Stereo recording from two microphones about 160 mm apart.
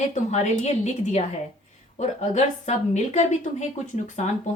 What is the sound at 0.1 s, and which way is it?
A woman's voice, 45° left (ahead or behind).